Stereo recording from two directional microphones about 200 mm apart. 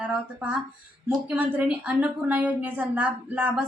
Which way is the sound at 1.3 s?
5° right (ahead or behind).